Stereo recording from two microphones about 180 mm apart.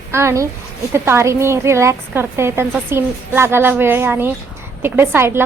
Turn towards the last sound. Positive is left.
turn(degrees=-15)  # may be behind; listen again after turning